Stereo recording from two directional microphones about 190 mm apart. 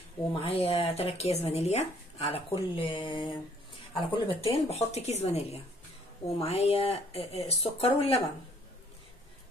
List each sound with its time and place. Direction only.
0.3 s speech: 30° left (ahead or behind)